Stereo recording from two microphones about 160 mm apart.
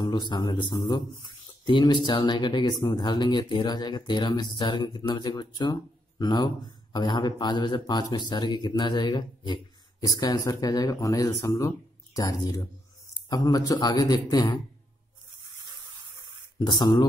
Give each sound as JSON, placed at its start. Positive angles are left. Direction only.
{"t": 0.0, "sound": "speech", "side_deg": 25}
{"t": 16.5, "sound": "speech", "side_deg": 25}